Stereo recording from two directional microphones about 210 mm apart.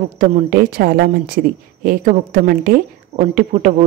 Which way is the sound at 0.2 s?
40° right (ahead or behind).